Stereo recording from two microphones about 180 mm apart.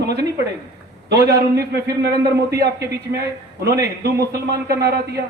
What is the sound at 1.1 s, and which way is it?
A man's voice, 60° right (ahead or behind).